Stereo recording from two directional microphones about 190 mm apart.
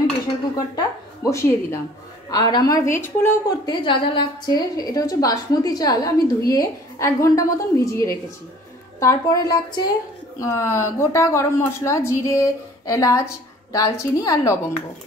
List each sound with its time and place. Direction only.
0.7 s a woman's voice: 15° left (ahead or behind)